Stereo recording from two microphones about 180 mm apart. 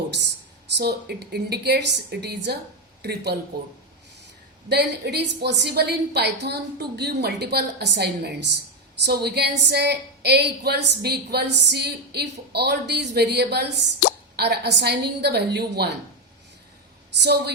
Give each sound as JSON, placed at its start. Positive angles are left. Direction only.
{"t": 0.8, "sound": "a woman's voice", "side_deg": -65}
{"t": 4.7, "sound": "a woman's voice", "side_deg": -65}
{"t": 17.2, "sound": "a woman's voice", "side_deg": -65}